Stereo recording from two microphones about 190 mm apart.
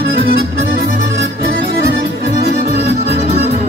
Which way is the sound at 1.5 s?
60° right (ahead or behind).